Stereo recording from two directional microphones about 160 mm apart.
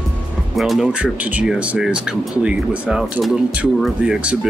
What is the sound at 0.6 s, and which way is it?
Speech, centre (ahead or behind).